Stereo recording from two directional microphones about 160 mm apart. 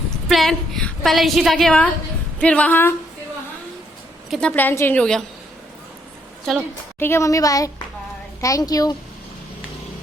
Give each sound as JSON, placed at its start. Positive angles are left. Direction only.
{"t": 0.1, "sound": "a woman's voice", "side_deg": 0}
{"t": 4.3, "sound": "a woman's voice", "side_deg": 5}
{"t": 7.0, "sound": "a woman's voice", "side_deg": 15}